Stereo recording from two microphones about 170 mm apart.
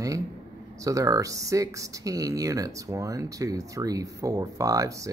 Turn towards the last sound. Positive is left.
turn(degrees=-20)  # may be behind; listen again after turning